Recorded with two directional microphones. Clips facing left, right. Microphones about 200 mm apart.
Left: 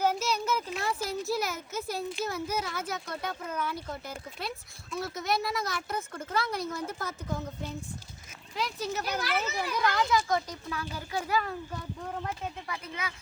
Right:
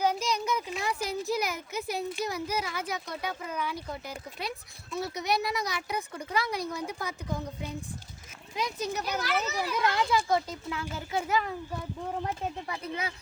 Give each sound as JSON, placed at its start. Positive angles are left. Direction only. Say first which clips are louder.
{"t": 0.2, "sound": "a sound", "louder": "even", "side_deg": -15}
{"t": 0.7, "sound": "speech", "louder": "even", "side_deg": 0}
{"t": 1.7, "sound": "speech", "louder": "right 1 dB", "side_deg": -15}
{"t": 9.0, "sound": "speech", "louder": "even", "side_deg": 0}
{"t": 9.7, "sound": "a child's voice", "louder": "even", "side_deg": -25}
{"t": 12.1, "sound": "a child's voice", "louder": "right 3 dB", "side_deg": -25}